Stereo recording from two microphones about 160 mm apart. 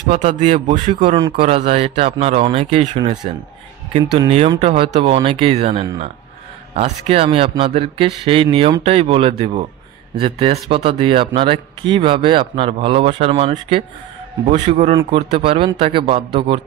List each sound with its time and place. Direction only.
0.0 s speech: 45° right (ahead or behind)
1.0 s speech: 35° right (ahead or behind)
4.6 s speech: 35° right (ahead or behind)
15.0 s speech: 35° right (ahead or behind)